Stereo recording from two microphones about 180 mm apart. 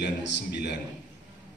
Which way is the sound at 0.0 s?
70° left (ahead or behind).